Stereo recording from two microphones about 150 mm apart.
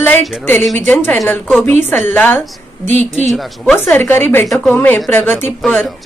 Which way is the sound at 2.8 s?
50° right (ahead or behind).